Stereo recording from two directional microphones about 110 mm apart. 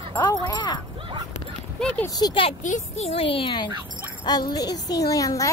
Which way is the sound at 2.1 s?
40° left (ahead or behind).